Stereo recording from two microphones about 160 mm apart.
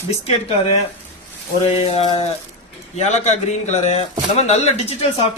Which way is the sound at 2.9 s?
45° left (ahead or behind).